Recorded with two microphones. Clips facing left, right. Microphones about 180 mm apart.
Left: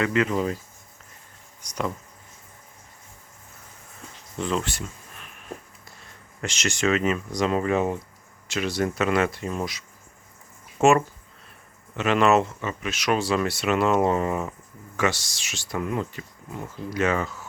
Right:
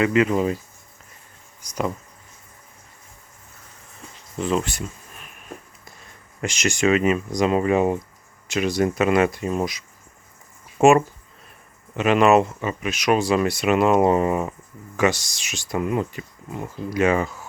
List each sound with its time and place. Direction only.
0.0 s speech: 10° right (ahead or behind)
1.6 s speech: 10° right (ahead or behind)
4.4 s speech: 5° right (ahead or behind)
6.4 s speech: 10° right (ahead or behind)